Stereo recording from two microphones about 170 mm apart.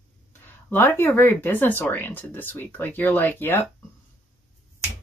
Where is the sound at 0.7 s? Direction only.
10° left (ahead or behind).